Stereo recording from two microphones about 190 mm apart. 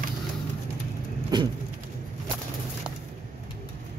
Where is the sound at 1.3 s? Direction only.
20° right (ahead or behind).